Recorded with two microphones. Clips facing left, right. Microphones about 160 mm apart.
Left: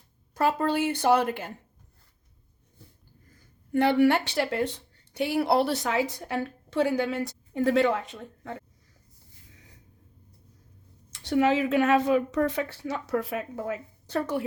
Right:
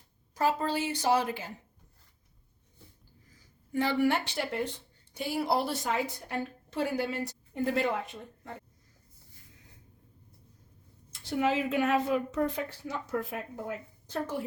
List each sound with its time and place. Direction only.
0.3 s a woman's voice: 60° left (ahead or behind)
3.2 s speech: 55° left (ahead or behind); by 8.5 s 90° left
11.1 s a woman's voice: 80° left